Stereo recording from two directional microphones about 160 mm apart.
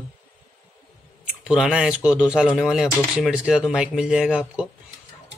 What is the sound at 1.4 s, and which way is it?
Speech, 5° right (ahead or behind).